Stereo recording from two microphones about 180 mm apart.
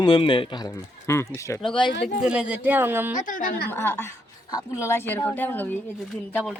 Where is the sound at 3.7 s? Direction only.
10° left (ahead or behind).